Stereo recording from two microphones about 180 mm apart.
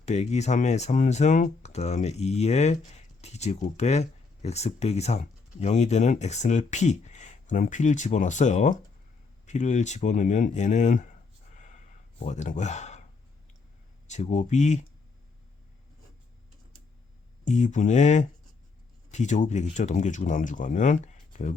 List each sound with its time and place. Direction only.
0.0 s speech: 40° left (ahead or behind)
11.5 s a sound: 40° left (ahead or behind)
14.1 s speech: 40° left (ahead or behind)
17.4 s speech: 40° left (ahead or behind)